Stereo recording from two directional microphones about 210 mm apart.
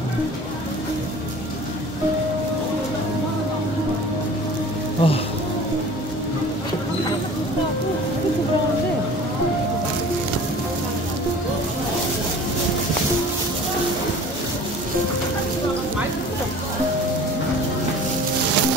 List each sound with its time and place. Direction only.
5.0 s speech: 25° left (ahead or behind)